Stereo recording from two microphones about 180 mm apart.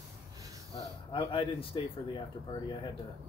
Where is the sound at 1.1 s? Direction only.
30° left (ahead or behind).